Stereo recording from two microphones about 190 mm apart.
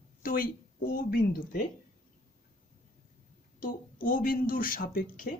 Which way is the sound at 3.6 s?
50° left (ahead or behind).